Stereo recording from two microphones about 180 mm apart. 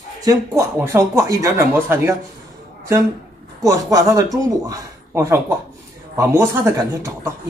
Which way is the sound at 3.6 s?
20° right (ahead or behind).